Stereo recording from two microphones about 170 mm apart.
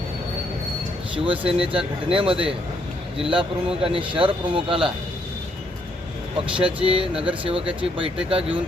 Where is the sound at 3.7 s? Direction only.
30° right (ahead or behind).